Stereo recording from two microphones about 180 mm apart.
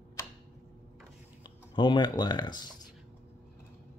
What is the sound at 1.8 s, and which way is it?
Speech, 25° left (ahead or behind).